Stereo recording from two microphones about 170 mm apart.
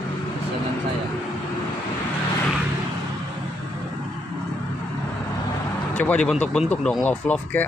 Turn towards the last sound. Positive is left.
turn(degrees=10)  # may be behind; listen again after turning